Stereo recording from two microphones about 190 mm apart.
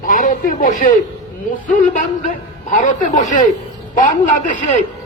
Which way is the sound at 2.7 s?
45° left (ahead or behind).